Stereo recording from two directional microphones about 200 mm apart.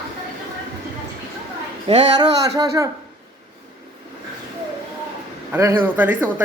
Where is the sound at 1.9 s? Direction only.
25° right (ahead or behind).